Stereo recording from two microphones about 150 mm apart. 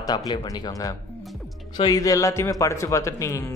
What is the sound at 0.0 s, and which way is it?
Speech, 25° left (ahead or behind).